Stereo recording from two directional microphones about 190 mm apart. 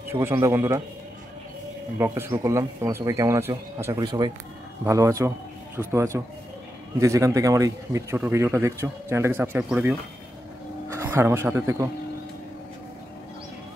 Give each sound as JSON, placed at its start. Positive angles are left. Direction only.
{"t": 0.1, "sound": "speech", "side_deg": -15}
{"t": 2.0, "sound": "speech", "side_deg": -10}